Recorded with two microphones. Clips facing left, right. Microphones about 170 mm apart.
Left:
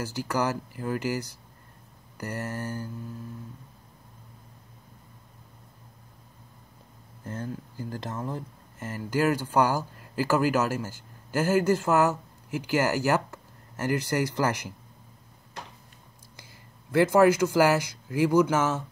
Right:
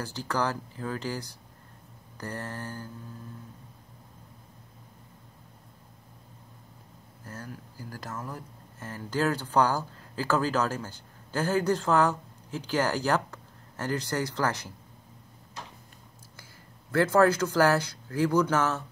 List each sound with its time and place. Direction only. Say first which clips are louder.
0.0 s speech: left 2 dB; 10° left (ahead or behind)
7.2 s speech: left 7 dB; 20° left (ahead or behind)
16.9 s speech: left 2 dB; 10° left (ahead or behind)